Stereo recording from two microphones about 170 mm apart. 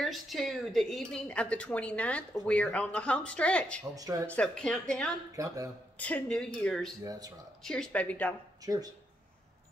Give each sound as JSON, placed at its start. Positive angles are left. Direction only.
{"t": 0.0, "sound": "speech", "side_deg": 0}
{"t": 3.9, "sound": "speech", "side_deg": -20}
{"t": 4.3, "sound": "speech", "side_deg": 5}
{"t": 5.3, "sound": "speech", "side_deg": -20}
{"t": 5.9, "sound": "speech", "side_deg": 10}
{"t": 7.1, "sound": "speech", "side_deg": -20}
{"t": 7.6, "sound": "speech", "side_deg": 5}
{"t": 8.6, "sound": "speech", "side_deg": -20}